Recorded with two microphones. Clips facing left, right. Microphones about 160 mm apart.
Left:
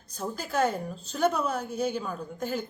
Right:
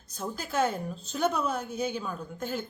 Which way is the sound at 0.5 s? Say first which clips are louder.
Left 1 dB; 5° right (ahead or behind).